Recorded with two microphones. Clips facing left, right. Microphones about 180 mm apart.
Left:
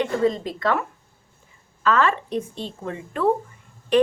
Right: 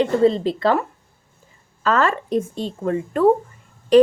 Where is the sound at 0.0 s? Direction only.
30° right (ahead or behind).